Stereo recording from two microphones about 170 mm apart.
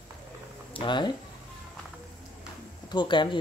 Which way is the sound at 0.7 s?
30° left (ahead or behind).